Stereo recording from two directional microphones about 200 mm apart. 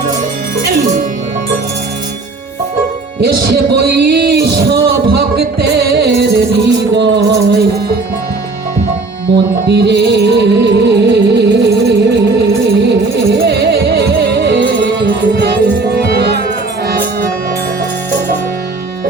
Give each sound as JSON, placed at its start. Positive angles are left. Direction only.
{"t": 3.2, "sound": "music", "side_deg": -55}
{"t": 9.6, "sound": "music", "side_deg": -55}